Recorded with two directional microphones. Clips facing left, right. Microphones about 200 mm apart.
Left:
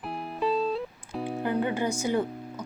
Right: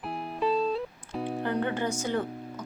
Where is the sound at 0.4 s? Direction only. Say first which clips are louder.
Even; centre (ahead or behind).